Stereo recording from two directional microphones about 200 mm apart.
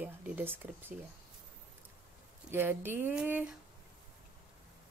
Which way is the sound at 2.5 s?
10° right (ahead or behind).